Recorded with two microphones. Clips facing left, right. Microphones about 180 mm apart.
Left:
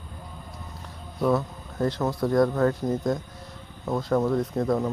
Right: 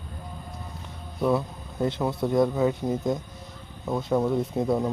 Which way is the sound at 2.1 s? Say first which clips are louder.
Left 1 dB; 25° right (ahead or behind).